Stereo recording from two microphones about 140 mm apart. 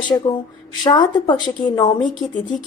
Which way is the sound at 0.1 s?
30° left (ahead or behind).